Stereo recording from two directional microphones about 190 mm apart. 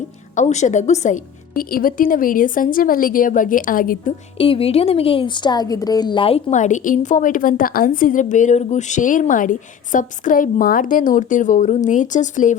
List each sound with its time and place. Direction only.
0.3 s a woman's voice: 40° left (ahead or behind)
4.4 s a woman's voice: 30° left (ahead or behind)